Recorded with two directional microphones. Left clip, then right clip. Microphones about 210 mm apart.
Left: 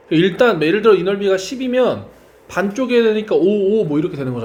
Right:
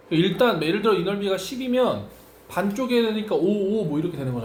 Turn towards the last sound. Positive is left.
turn(degrees=35)  # may be behind; listen again after turning